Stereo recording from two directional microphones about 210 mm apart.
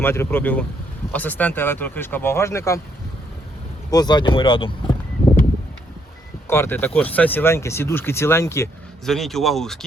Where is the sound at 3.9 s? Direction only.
20° left (ahead or behind).